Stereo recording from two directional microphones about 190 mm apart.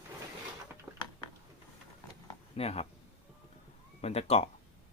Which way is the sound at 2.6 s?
30° left (ahead or behind).